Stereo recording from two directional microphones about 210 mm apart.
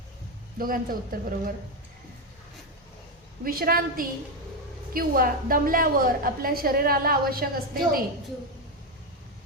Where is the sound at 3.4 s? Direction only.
45° right (ahead or behind).